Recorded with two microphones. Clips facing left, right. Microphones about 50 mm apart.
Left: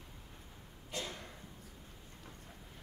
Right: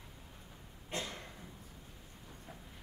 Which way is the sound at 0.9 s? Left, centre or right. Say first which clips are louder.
Right 2 dB; right.